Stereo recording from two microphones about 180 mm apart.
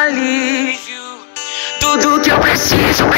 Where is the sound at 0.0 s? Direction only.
70° left (ahead or behind).